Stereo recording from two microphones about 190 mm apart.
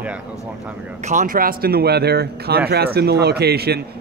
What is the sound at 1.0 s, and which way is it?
A man's voice, 40° right (ahead or behind).